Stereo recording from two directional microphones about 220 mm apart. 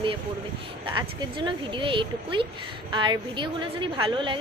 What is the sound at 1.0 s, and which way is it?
A woman's voice, 20° right (ahead or behind).